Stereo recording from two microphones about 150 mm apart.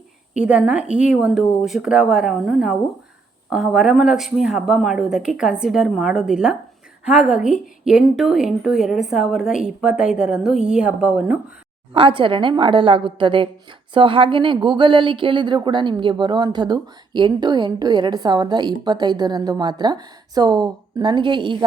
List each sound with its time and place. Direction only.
0.3 s a woman's voice: 5° right (ahead or behind)
11.9 s a woman's voice: 35° right (ahead or behind)